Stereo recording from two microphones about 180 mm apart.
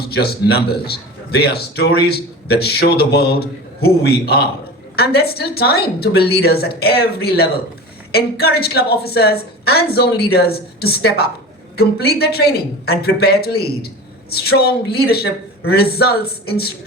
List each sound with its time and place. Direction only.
0.0 s speech: 60° left (ahead or behind)